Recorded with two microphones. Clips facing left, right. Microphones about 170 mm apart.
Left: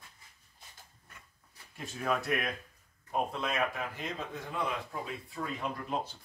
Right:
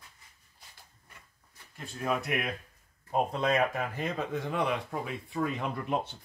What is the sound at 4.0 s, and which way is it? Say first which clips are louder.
Speech: right 6 dB; 70° right (ahead or behind).